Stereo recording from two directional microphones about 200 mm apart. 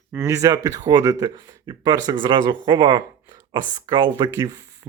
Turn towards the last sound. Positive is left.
turn(degrees=-20)  # may be behind; listen again after turning